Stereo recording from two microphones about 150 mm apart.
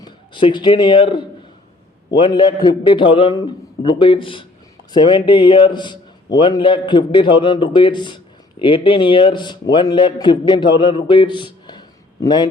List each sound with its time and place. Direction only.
0.0 s a man's voice: 30° left (ahead or behind)